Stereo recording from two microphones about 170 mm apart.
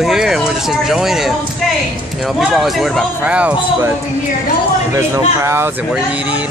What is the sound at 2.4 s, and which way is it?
Speech, centre (ahead or behind).